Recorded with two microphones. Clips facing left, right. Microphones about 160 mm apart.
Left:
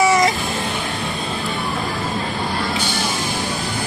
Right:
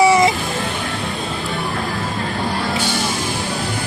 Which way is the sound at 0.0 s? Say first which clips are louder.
Right 3 dB; 30° right (ahead or behind).